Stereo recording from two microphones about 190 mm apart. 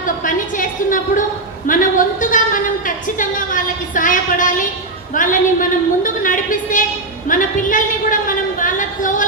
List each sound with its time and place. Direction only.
0.2 s a woman's voice: 45° left (ahead or behind)